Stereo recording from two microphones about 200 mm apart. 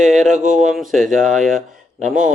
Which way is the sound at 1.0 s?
40° right (ahead or behind).